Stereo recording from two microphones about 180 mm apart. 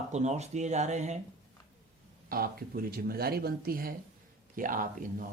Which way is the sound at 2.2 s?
55° right (ahead or behind).